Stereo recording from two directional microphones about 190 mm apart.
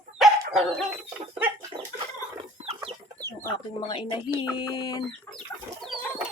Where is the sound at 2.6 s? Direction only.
30° right (ahead or behind).